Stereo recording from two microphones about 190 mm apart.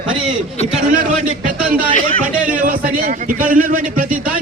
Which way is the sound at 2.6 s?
45° right (ahead or behind).